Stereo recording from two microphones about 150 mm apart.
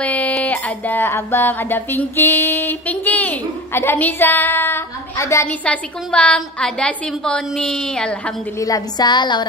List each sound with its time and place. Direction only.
0.0 s a sound: 10° left (ahead or behind)
5.7 s a woman's voice: 10° left (ahead or behind)
8.5 s a woman's voice: 25° left (ahead or behind)